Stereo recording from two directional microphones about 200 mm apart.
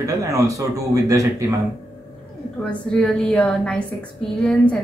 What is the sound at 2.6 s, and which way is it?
A woman's voice, 5° left (ahead or behind).